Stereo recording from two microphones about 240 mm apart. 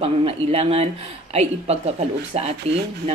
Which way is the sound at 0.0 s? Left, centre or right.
Right.